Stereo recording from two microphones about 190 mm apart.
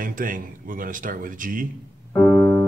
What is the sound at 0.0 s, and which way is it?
Speech, 45° right (ahead or behind).